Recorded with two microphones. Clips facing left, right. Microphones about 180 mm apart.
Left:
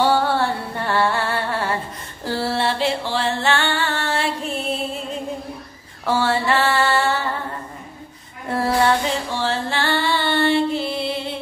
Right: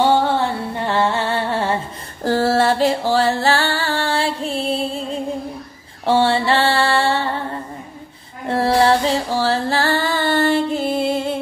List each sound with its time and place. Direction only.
0.1 s music: 20° right (ahead or behind)
2.2 s music: 40° right (ahead or behind)
6.0 s mantra: 30° right (ahead or behind)
8.5 s music: 30° right (ahead or behind); by 11.3 s 45° right (ahead or behind)